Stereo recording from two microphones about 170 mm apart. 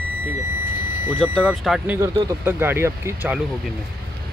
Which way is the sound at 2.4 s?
15° right (ahead or behind).